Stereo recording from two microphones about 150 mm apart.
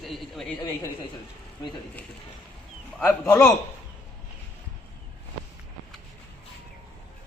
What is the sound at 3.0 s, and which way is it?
Speech, 15° left (ahead or behind).